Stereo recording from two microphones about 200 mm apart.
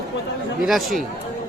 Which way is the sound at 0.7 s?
Centre (ahead or behind).